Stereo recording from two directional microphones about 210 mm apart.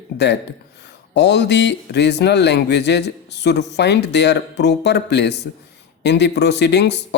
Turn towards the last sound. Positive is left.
turn(degrees=55)  # may be behind; listen again after turning